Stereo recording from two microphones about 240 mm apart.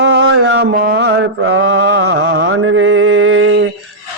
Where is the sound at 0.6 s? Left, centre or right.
Right.